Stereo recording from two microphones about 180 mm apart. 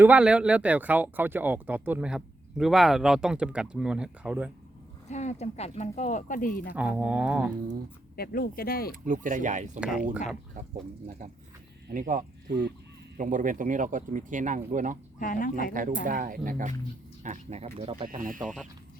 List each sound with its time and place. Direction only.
0.0 s speech: 5° right (ahead or behind)
5.0 s speech: 40° left (ahead or behind)
6.7 s speech: 5° right (ahead or behind)
8.1 s speech: 55° left (ahead or behind)
9.0 s speech: 45° right (ahead or behind)
9.8 s speech: 5° right (ahead or behind)
11.9 s speech: 50° right (ahead or behind)
12.5 s speech: 70° right (ahead or behind)
13.1 s speech: 45° right (ahead or behind)
15.2 s speech: 50° left (ahead or behind)
16.0 s speech: 50° right (ahead or behind)
17.2 s speech: 40° right (ahead or behind)
18.1 s speech: 50° right (ahead or behind)
18.3 s speech: centre (ahead or behind)